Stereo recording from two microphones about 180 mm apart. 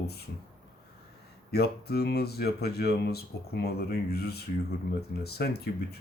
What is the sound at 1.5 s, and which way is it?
Speech, 65° left (ahead or behind).